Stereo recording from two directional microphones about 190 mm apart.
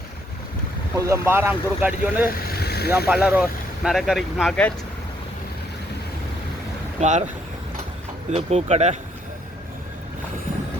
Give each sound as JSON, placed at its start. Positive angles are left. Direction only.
{"t": 0.9, "sound": "speech", "side_deg": -15}
{"t": 2.5, "sound": "vehicle", "side_deg": 55}
{"t": 3.1, "sound": "speech", "side_deg": -5}
{"t": 7.0, "sound": "speech", "side_deg": -40}
{"t": 8.3, "sound": "speech", "side_deg": -35}